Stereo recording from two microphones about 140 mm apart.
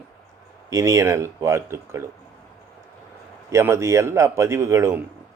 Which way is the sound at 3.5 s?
20° right (ahead or behind).